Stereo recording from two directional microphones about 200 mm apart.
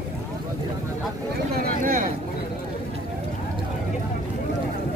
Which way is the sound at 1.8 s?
40° right (ahead or behind).